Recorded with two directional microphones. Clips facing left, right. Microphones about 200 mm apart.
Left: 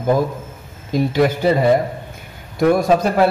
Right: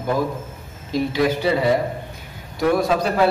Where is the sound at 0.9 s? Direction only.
50° left (ahead or behind).